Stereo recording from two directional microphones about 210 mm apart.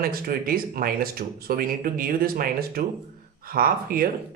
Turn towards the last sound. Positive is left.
turn(degrees=-45)  # may be behind; listen again after turning